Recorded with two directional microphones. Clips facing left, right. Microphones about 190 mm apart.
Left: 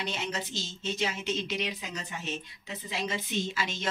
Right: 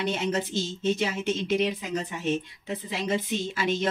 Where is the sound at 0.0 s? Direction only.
50° right (ahead or behind).